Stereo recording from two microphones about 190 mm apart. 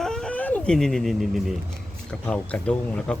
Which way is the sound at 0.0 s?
5° left (ahead or behind).